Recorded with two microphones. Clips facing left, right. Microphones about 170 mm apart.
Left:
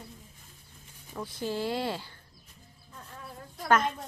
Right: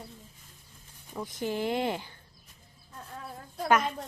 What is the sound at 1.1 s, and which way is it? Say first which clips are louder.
Speech: right 1 dB; 15° right (ahead or behind).